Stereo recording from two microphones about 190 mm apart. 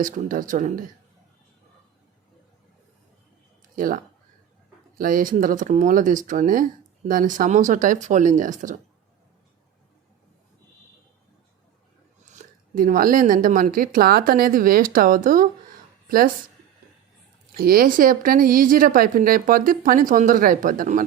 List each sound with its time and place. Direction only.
0.0 s speech: 45° right (ahead or behind)
3.8 s speech: 45° right (ahead or behind)
12.3 s a woman's voice: 45° right (ahead or behind)
17.6 s speech: 50° right (ahead or behind)